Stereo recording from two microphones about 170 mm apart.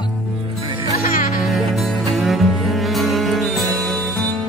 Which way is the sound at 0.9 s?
55° left (ahead or behind).